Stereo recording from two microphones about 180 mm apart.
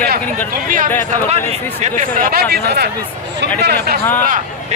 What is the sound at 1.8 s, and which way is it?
Speech, 50° right (ahead or behind).